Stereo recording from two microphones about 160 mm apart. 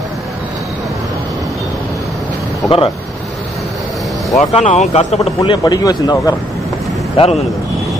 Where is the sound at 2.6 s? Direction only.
35° left (ahead or behind).